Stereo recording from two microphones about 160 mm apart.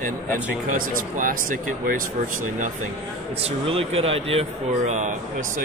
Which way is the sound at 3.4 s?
35° right (ahead or behind).